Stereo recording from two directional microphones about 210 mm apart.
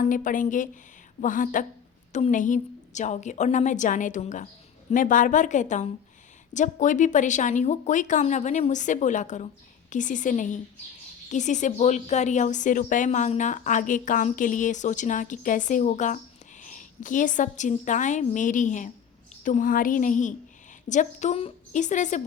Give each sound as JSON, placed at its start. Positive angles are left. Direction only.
{"t": 0.0, "sound": "a woman's voice", "side_deg": 40}